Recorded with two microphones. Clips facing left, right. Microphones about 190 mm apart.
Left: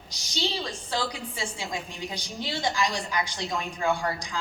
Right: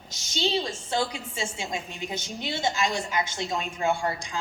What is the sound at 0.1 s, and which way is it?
A woman's voice, 25° right (ahead or behind).